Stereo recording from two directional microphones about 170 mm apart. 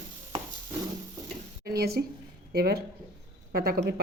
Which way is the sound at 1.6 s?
65° right (ahead or behind).